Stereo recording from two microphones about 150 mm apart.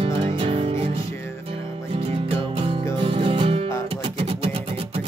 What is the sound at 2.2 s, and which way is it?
Music, 40° right (ahead or behind).